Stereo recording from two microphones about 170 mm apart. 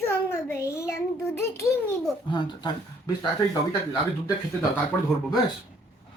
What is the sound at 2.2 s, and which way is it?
Speech, 25° left (ahead or behind).